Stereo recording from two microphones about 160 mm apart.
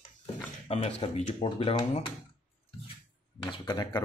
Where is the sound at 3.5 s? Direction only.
25° left (ahead or behind).